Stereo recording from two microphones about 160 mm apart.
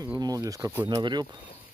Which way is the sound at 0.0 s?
25° right (ahead or behind).